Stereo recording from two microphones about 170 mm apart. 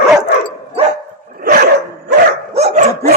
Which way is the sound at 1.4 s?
60° right (ahead or behind).